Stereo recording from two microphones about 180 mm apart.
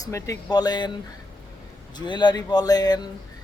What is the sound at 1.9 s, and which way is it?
Speech, 25° left (ahead or behind).